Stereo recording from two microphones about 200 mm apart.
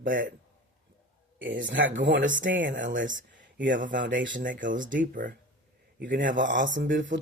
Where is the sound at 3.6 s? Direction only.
40° right (ahead or behind).